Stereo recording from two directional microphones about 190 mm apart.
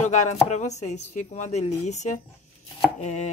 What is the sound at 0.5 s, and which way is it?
Speech, 35° left (ahead or behind).